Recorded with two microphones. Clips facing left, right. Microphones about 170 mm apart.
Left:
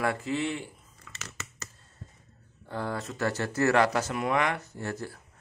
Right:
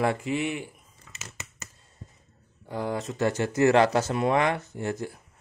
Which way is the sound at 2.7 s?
15° right (ahead or behind).